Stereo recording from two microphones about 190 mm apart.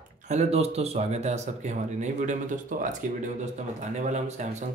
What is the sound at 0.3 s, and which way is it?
Speech, 35° right (ahead or behind).